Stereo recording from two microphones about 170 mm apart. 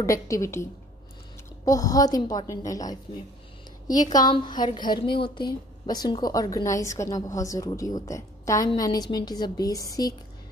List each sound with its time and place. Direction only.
0.0 s a woman's voice: 20° left (ahead or behind)